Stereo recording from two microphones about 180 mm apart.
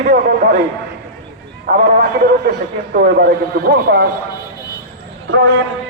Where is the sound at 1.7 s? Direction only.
60° right (ahead or behind).